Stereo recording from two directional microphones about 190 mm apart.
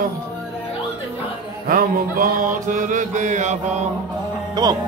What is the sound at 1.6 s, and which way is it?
Music, 50° right (ahead or behind).